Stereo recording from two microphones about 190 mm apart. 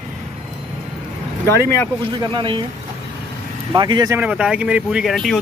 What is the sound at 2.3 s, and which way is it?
Speech, 25° right (ahead or behind).